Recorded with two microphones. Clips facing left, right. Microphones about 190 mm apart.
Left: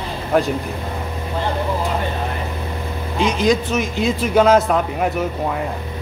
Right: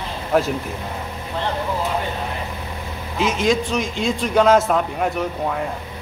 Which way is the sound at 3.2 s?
Centre (ahead or behind).